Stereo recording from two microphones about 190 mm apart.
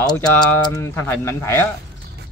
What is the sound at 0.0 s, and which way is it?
Speech, 20° left (ahead or behind).